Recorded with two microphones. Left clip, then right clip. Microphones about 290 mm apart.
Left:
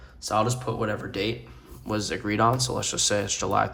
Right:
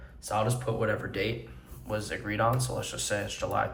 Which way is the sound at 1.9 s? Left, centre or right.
Left.